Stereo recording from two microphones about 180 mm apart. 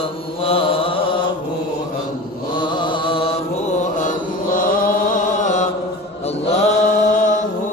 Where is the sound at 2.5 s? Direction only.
25° left (ahead or behind).